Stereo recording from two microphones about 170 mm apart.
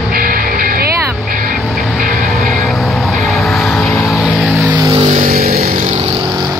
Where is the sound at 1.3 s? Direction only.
55° right (ahead or behind).